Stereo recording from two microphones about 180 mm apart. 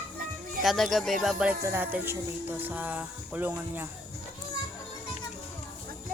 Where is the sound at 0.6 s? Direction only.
Centre (ahead or behind).